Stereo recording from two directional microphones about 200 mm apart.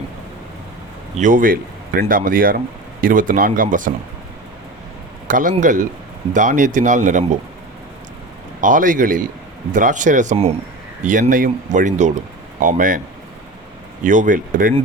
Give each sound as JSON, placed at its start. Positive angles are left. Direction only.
{"t": 1.1, "sound": "speech", "side_deg": -40}
{"t": 5.3, "sound": "speech", "side_deg": -40}
{"t": 8.6, "sound": "speech", "side_deg": -40}
{"t": 14.0, "sound": "speech", "side_deg": -40}